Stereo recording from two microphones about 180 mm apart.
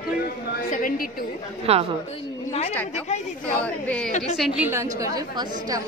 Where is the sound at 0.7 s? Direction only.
50° left (ahead or behind).